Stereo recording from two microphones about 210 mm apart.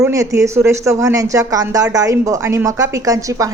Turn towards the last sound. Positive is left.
turn(degrees=-15)  # may be behind; listen again after turning